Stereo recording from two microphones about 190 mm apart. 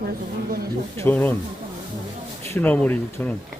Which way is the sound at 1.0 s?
10° left (ahead or behind).